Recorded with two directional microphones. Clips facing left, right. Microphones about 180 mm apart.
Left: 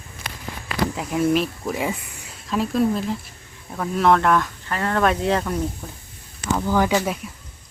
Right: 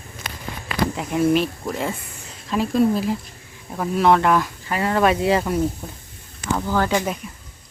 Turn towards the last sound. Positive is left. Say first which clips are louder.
# left 1 dB
turn(degrees=10)  # may be behind; listen again after turning